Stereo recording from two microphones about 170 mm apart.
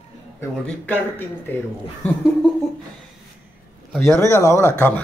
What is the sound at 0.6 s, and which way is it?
Speech, 10° left (ahead or behind).